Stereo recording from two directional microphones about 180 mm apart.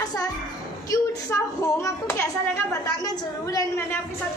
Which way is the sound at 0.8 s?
20° left (ahead or behind).